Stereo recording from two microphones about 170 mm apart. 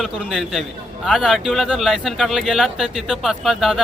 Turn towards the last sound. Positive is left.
turn(degrees=0)  # may be behind; listen again after turning